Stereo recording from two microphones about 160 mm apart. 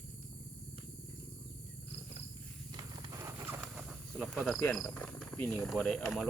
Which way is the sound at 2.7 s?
25° right (ahead or behind).